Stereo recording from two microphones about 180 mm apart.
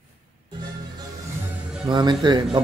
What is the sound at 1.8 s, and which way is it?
Speech, 25° right (ahead or behind).